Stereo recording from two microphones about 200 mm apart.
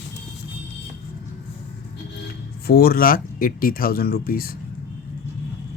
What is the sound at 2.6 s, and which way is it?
Speech, 50° left (ahead or behind).